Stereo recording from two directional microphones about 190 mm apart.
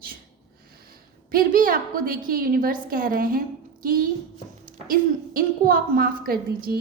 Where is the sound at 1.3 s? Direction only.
50° right (ahead or behind).